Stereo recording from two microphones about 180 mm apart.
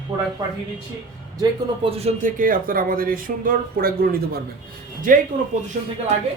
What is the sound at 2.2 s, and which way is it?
Speech, 50° right (ahead or behind).